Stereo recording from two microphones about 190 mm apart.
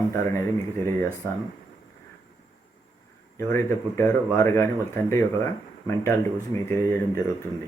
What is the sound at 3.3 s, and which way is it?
Speech, 15° left (ahead or behind).